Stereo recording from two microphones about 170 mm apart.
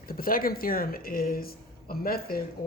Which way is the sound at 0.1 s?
60° left (ahead or behind).